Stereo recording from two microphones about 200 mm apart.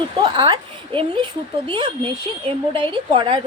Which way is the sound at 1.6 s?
25° right (ahead or behind).